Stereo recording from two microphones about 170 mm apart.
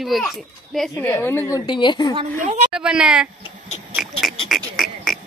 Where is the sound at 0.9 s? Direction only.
15° left (ahead or behind).